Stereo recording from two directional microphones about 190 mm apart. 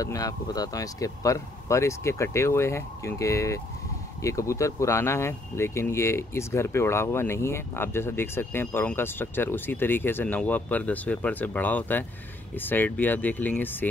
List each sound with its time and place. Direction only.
0.0 s speech: 20° left (ahead or behind)